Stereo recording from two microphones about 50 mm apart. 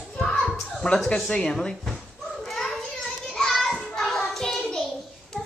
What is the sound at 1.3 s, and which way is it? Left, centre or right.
Children playing, centre.